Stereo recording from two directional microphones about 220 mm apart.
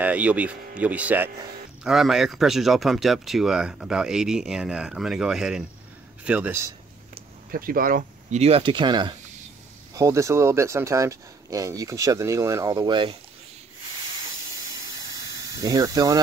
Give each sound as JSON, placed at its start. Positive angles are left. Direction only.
{"t": 0.0, "sound": "speech", "side_deg": -5}
{"t": 7.5, "sound": "speech", "side_deg": -40}
{"t": 15.6, "sound": "speech", "side_deg": -15}